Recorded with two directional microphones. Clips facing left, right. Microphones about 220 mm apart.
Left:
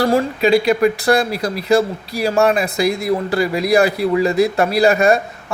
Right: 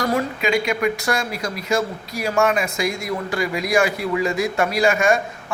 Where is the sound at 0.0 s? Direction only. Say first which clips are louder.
Left 6 dB; 35° left (ahead or behind).